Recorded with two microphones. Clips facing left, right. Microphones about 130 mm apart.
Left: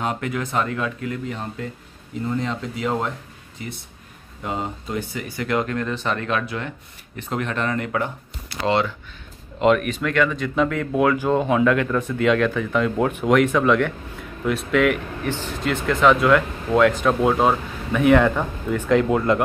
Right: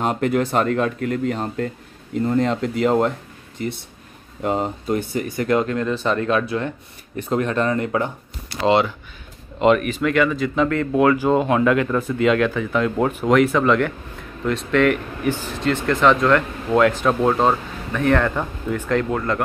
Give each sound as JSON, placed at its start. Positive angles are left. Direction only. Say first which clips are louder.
{"t": 0.0, "sound": "speech", "louder": "right 6 dB", "side_deg": -45}
{"t": 4.4, "sound": "speech", "louder": "right 6 dB", "side_deg": -50}
{"t": 5.4, "sound": "speech", "louder": "right 3 dB", "side_deg": -30}
{"t": 9.6, "sound": "speech", "louder": "right 2 dB", "side_deg": 0}
{"t": 15.3, "sound": "speech", "louder": "right 4 dB", "side_deg": -10}
{"t": 19.0, "sound": "speech", "louder": "left 3 dB", "side_deg": 15}